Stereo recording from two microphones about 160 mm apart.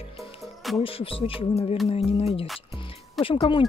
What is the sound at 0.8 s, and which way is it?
Speech, 35° left (ahead or behind).